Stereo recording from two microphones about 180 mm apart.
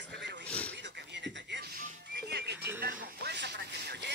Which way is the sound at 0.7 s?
75° right (ahead or behind).